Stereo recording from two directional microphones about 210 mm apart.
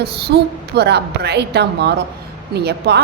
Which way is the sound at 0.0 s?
50° right (ahead or behind).